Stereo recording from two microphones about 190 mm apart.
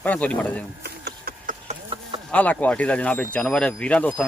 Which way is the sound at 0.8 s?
55° right (ahead or behind).